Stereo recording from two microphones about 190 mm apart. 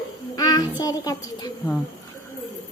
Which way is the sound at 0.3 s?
20° left (ahead or behind).